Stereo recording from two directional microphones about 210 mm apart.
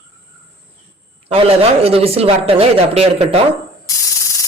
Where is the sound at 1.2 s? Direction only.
25° right (ahead or behind).